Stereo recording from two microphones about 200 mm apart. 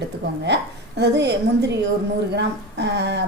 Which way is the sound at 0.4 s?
60° right (ahead or behind).